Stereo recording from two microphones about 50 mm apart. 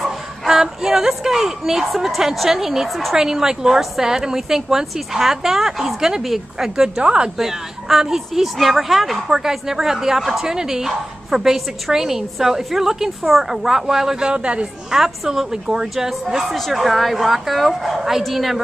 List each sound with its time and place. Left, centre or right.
0.0 s a woman's voice: centre
3.2 s a woman's voice: centre
7.0 s speech: right
7.3 s a woman's voice: centre
14.3 s speech: right
14.9 s a woman's voice: centre